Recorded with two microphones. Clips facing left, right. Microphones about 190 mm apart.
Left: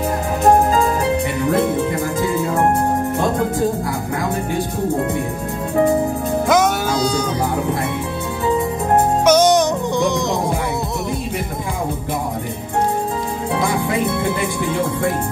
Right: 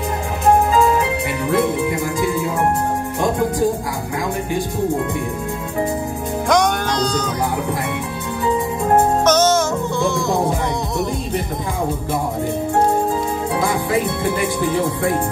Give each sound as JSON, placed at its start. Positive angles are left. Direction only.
{"t": 6.5, "sound": "music", "side_deg": 5}
{"t": 9.2, "sound": "music", "side_deg": 10}